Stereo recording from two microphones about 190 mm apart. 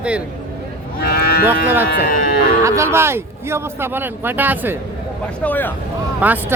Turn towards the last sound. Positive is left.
turn(degrees=-10)  # may be behind; listen again after turning